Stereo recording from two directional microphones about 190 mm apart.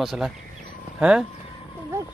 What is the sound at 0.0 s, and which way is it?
A child's voice, centre (ahead or behind).